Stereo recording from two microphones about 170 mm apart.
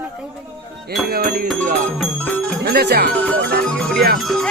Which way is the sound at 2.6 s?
70° right (ahead or behind).